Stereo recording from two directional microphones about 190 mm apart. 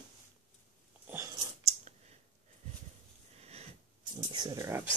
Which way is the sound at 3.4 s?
35° right (ahead or behind).